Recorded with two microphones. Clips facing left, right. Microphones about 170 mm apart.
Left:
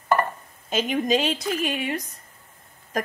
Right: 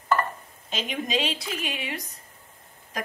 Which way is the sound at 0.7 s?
45° left (ahead or behind).